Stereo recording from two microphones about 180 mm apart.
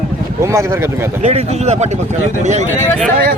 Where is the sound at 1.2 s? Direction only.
35° right (ahead or behind).